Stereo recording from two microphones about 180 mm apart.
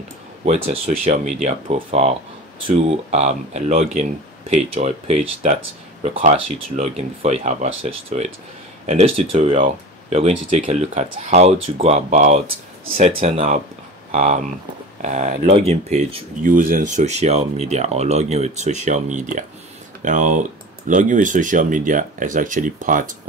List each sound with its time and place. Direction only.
0.7 s speech: 40° right (ahead or behind)